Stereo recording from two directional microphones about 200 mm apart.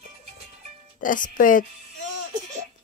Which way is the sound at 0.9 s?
40° left (ahead or behind).